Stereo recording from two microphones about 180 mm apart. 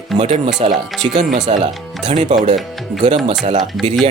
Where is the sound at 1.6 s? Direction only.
25° right (ahead or behind).